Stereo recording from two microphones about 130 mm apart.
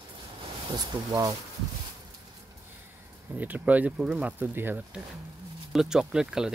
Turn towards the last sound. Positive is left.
turn(degrees=-5)  # may be behind; listen again after turning